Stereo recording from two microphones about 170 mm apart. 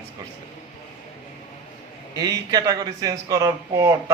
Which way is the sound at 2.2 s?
20° right (ahead or behind).